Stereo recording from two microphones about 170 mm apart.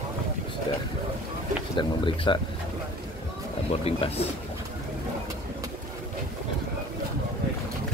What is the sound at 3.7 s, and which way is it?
Speech, 35° left (ahead or behind).